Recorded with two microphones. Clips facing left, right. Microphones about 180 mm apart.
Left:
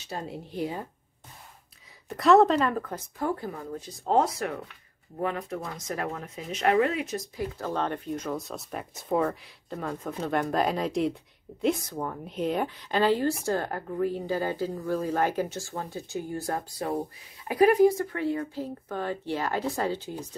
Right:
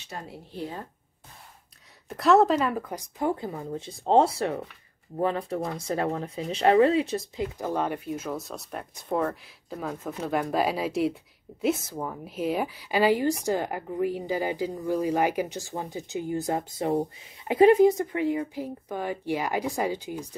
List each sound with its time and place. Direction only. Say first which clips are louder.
0.3 s a woman's voice: left 4 dB; 15° left (ahead or behind)
2.0 s speech: left 1 dB; centre (ahead or behind); by 7.4 s 30° right (ahead or behind)
7.5 s speech: right 1 dB; 15° right (ahead or behind)